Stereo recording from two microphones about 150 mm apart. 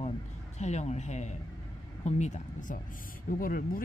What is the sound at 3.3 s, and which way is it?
Speech, 70° left (ahead or behind).